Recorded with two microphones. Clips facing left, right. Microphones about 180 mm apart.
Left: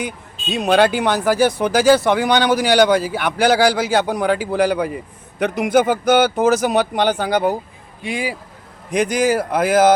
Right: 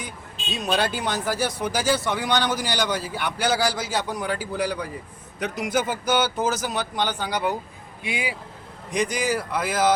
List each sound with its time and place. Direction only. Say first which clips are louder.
0.5 s speech: left 10 dB; 65° left (ahead or behind)
5.4 s speech: left 9 dB; 60° left (ahead or behind)
8.0 s speech: left 5 dB; 35° left (ahead or behind)
8.9 s speech: left 7 dB; 45° left (ahead or behind)